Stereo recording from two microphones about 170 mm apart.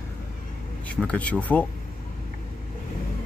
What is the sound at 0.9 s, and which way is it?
Speech, 5° left (ahead or behind).